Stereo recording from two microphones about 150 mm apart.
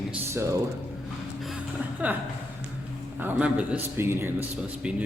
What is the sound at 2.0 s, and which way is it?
Speech, 10° right (ahead or behind).